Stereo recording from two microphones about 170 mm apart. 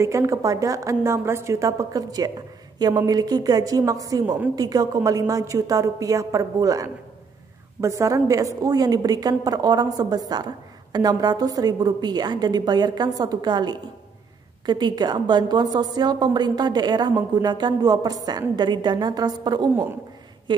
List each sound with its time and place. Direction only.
0.0 s a woman's voice: 15° right (ahead or behind)
19.7 s a woman's voice: 15° right (ahead or behind)